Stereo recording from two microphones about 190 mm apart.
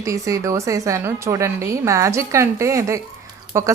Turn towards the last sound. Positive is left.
turn(degrees=-15)  # may be behind; listen again after turning